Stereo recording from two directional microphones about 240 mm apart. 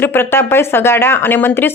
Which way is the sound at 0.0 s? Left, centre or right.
Centre.